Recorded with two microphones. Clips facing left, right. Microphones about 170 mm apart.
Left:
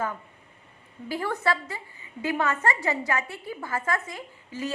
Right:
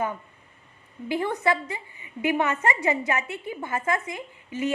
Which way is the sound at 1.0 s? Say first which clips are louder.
Right 3 dB; 20° right (ahead or behind).